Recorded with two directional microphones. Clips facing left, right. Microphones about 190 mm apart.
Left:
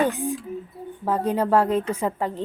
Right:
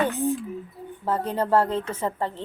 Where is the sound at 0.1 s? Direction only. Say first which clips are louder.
Right 3 dB; 15° left (ahead or behind).